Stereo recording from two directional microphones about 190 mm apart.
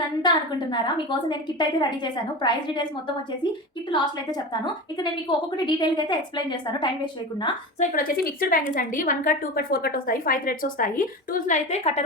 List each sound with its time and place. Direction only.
0.2 s a woman's voice: 25° left (ahead or behind)
3.9 s a woman's voice: 25° left (ahead or behind)
7.8 s a woman's voice: 45° left (ahead or behind)